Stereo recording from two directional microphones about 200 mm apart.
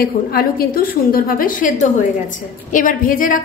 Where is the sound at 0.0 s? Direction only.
50° left (ahead or behind).